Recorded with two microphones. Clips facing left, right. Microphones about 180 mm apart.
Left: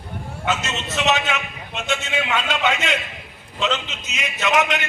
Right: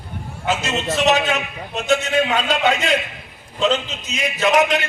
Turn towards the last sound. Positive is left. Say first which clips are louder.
# right 4 dB
turn(degrees=-35)  # may be behind; listen again after turning